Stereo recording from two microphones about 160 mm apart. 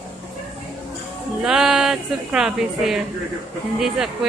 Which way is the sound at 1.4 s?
5° right (ahead or behind).